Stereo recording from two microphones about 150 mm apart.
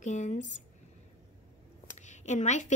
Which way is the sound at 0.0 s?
55° left (ahead or behind).